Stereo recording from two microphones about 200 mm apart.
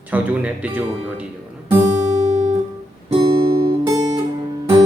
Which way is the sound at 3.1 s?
25° right (ahead or behind).